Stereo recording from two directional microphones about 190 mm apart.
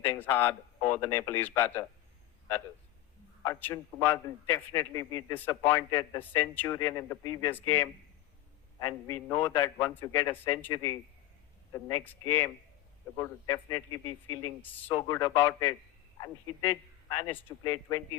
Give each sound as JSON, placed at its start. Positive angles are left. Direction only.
{"t": 0.0, "sound": "a man's voice", "side_deg": 10}
{"t": 3.4, "sound": "a man's voice", "side_deg": 15}
{"t": 17.3, "sound": "a man's voice", "side_deg": 15}